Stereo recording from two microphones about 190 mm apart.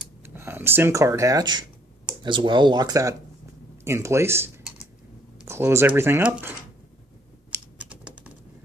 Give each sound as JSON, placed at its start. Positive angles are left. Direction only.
{"t": 0.2, "sound": "speech", "side_deg": -10}
{"t": 7.5, "sound": "typing", "side_deg": -5}